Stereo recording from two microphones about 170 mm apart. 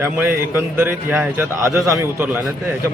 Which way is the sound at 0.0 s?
15° right (ahead or behind).